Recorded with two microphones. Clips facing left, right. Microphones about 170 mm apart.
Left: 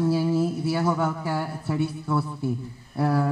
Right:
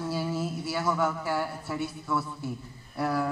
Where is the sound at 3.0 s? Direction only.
35° left (ahead or behind).